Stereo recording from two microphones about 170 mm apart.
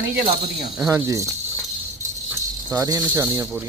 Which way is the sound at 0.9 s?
20° right (ahead or behind).